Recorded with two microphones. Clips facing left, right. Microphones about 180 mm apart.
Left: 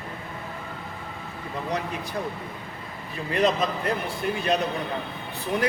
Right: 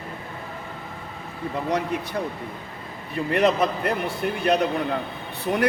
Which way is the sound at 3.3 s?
65° right (ahead or behind).